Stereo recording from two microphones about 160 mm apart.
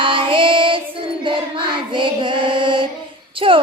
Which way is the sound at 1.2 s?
30° right (ahead or behind).